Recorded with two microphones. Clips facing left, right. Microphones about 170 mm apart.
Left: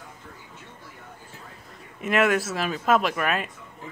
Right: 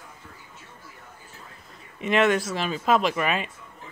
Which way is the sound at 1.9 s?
5° left (ahead or behind).